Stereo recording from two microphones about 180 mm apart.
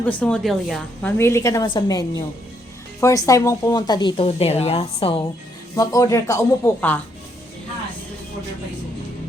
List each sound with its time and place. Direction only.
0.0 s speech: 10° left (ahead or behind)
1.2 s speech: 15° left (ahead or behind)
5.7 s speech: 20° left (ahead or behind)